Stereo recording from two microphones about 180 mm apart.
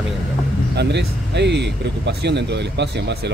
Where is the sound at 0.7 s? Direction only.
70° right (ahead or behind).